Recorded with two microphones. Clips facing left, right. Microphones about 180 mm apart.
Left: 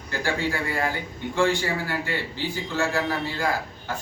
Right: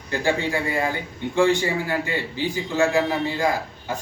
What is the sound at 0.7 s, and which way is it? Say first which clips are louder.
A man's voice: right 2 dB; 20° right (ahead or behind).